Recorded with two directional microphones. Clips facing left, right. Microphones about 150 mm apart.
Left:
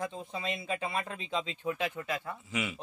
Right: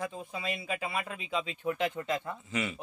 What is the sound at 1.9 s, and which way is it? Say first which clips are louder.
Speech: right 3 dB; 20° right (ahead or behind).